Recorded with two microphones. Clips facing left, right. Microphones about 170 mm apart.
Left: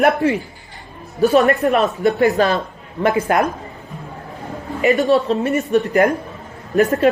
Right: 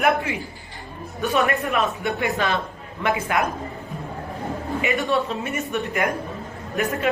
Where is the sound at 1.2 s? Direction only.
35° left (ahead or behind).